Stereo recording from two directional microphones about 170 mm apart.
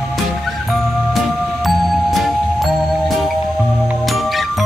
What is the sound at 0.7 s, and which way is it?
Music, centre (ahead or behind).